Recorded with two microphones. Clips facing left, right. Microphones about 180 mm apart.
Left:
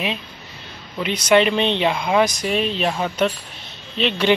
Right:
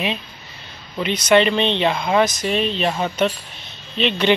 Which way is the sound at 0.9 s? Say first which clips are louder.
Right 1 dB; 5° left (ahead or behind).